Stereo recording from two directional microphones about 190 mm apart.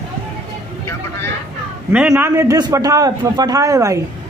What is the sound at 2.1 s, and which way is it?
A man's voice, 15° right (ahead or behind).